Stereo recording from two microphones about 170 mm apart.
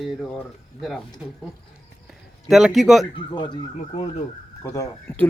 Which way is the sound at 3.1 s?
25° left (ahead or behind).